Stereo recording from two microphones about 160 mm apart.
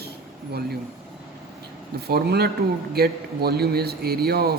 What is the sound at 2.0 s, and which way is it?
A man's voice, 80° right.